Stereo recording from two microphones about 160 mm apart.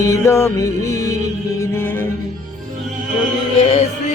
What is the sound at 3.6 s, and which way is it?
Music, 35° left (ahead or behind).